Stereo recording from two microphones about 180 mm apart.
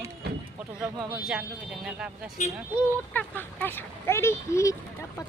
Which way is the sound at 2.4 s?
40° left (ahead or behind).